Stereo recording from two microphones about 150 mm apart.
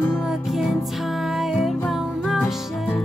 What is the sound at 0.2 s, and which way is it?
Music, centre (ahead or behind).